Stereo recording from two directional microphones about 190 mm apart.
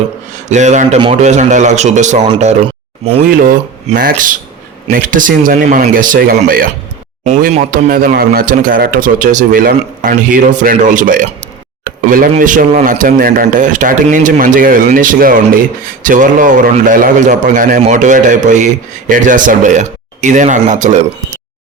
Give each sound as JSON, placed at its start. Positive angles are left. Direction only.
{"t": 0.4, "sound": "speech", "side_deg": -40}
{"t": 3.9, "sound": "speech", "side_deg": -45}
{"t": 11.9, "sound": "a sound", "side_deg": -45}
{"t": 12.3, "sound": "speech", "side_deg": -45}